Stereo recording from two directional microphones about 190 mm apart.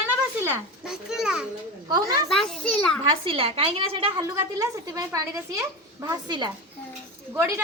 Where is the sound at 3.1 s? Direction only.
30° right (ahead or behind).